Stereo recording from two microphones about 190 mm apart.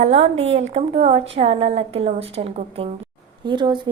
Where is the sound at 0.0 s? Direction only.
35° right (ahead or behind).